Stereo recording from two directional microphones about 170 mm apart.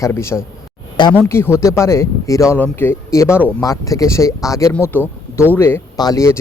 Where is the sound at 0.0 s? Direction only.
15° left (ahead or behind).